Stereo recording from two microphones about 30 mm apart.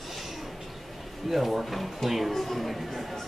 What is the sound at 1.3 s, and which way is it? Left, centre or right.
Speech, centre.